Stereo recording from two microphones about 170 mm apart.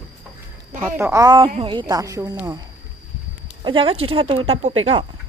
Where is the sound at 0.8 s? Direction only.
15° right (ahead or behind).